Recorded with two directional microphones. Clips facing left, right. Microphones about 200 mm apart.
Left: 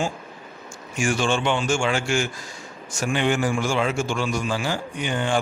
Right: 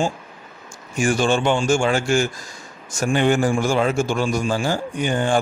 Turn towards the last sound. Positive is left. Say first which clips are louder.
# right 4 dB
turn(degrees=-45)  # may be behind; listen again after turning